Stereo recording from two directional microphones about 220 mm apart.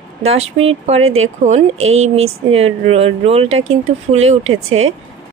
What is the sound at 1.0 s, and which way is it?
Speech, 65° right (ahead or behind).